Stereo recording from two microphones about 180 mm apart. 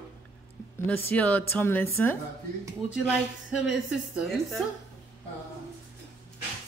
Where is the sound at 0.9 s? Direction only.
10° left (ahead or behind).